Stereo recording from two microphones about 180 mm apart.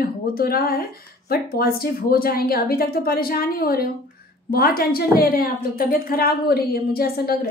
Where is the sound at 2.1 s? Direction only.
55° left (ahead or behind).